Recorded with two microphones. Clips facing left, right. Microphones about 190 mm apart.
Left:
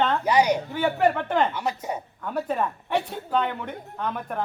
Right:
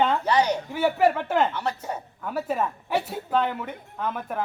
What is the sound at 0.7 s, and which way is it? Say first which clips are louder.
Speech: right 1 dB; 5° right (ahead or behind).